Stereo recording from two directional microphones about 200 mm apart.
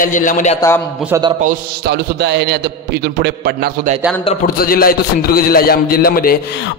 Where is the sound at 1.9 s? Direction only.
55° right (ahead or behind).